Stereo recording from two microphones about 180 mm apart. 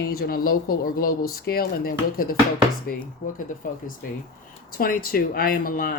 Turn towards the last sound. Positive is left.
turn(degrees=55)  # may be behind; listen again after turning